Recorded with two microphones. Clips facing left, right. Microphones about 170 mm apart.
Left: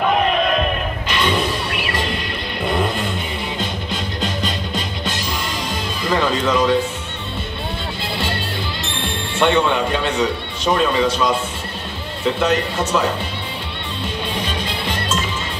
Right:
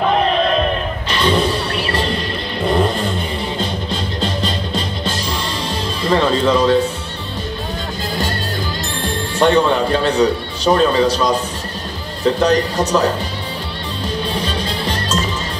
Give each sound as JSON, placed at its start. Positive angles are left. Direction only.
{"t": 0.6, "sound": "music", "side_deg": -35}
{"t": 6.0, "sound": "speech", "side_deg": -30}
{"t": 8.8, "sound": "music", "side_deg": -40}
{"t": 9.7, "sound": "a man's voice", "side_deg": -35}
{"t": 14.0, "sound": "music", "side_deg": -35}